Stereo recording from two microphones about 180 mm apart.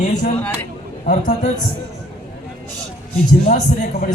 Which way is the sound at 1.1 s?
45° left (ahead or behind).